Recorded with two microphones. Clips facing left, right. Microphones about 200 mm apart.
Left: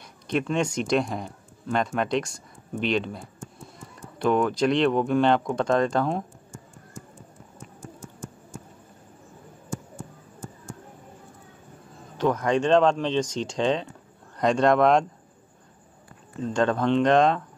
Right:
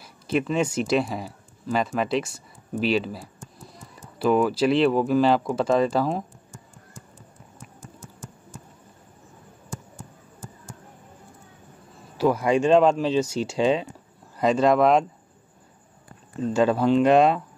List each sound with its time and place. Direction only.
0.0 s speech: 5° right (ahead or behind)
8.0 s a sound: 35° right (ahead or behind)
12.2 s speech: 10° right (ahead or behind)
16.4 s speech: 5° right (ahead or behind)